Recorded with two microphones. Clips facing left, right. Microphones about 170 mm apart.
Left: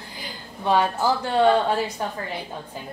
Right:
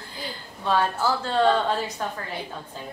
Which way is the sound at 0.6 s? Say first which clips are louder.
Left 2 dB; 15° left (ahead or behind).